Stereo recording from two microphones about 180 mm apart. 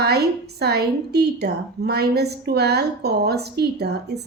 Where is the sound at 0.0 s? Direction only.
65° right (ahead or behind).